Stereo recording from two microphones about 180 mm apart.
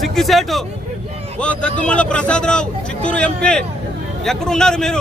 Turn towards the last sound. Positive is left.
turn(degrees=5)  # may be behind; listen again after turning